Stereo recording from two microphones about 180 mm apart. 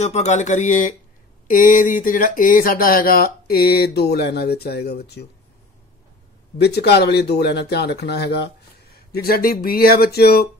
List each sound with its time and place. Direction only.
0.0 s speech: 40° left (ahead or behind); by 5.2 s 65° left (ahead or behind)
6.6 s speech: 65° left (ahead or behind)
9.1 s speech: 55° left (ahead or behind)